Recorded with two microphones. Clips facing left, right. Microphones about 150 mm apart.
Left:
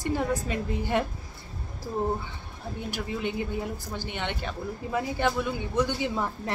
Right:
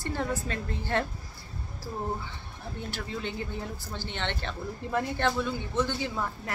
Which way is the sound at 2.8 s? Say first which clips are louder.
Left 4 dB; 15° left (ahead or behind).